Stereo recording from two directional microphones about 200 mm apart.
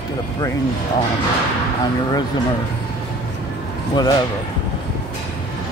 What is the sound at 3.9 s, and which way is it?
Speech, 20° left (ahead or behind).